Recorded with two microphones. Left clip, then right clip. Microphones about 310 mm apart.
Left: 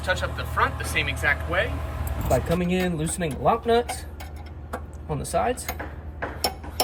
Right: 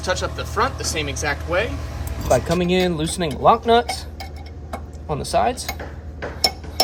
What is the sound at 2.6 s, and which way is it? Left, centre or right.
Speech, right.